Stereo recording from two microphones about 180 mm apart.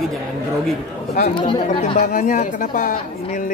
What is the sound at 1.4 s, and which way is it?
Speech, 25° left (ahead or behind).